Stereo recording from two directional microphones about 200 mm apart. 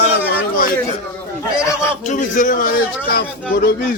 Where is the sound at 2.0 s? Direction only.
40° left (ahead or behind).